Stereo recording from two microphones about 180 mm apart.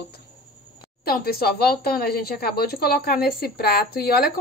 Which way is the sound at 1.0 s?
60° left (ahead or behind).